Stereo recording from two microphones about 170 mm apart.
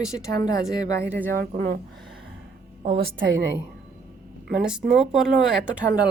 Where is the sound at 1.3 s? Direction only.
55° right (ahead or behind).